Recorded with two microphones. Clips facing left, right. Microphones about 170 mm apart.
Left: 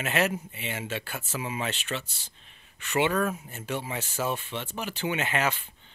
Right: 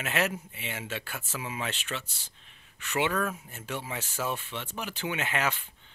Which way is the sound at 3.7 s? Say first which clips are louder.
Left 3 dB; 10° left (ahead or behind).